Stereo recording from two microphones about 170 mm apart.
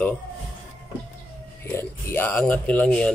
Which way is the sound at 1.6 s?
15° left (ahead or behind).